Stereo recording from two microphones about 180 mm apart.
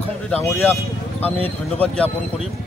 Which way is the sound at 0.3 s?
10° left (ahead or behind).